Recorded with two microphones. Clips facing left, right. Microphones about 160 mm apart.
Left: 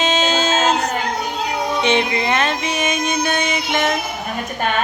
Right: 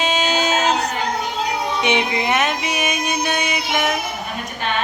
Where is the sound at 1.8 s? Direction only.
15° right (ahead or behind).